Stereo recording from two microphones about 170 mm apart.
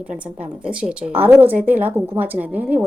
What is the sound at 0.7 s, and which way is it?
Speech, 5° right (ahead or behind).